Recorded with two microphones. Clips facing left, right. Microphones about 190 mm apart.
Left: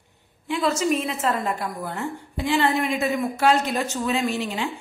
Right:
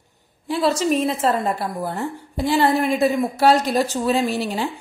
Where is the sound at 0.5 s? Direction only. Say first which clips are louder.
Right 3 dB; 35° right (ahead or behind).